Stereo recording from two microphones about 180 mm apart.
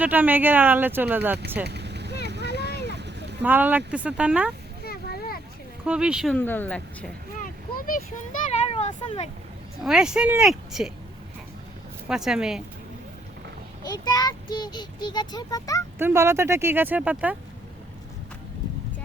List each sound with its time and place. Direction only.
0.0 s speech: 10° right (ahead or behind)
1.6 s boat: 70° right (ahead or behind)
2.2 s a sound: 70° right (ahead or behind)
3.4 s speech: 10° right (ahead or behind)
4.8 s a sound: 55° left (ahead or behind)
5.8 s speech: 5° right (ahead or behind)
6.3 s speech: 10° left (ahead or behind)
7.3 s a sound: 50° left (ahead or behind)
8.6 s a sound: 35° left (ahead or behind)
9.8 s speech: 5° right (ahead or behind)
12.0 s speech: 5° right (ahead or behind)
13.8 s speech: 25° left (ahead or behind)
16.0 s speech: 15° right (ahead or behind)